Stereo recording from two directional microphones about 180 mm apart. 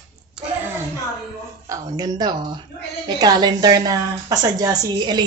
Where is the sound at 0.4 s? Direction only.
5° right (ahead or behind).